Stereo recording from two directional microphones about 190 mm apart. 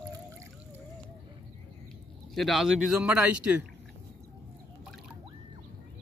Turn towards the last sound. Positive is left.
turn(degrees=-5)  # may be behind; listen again after turning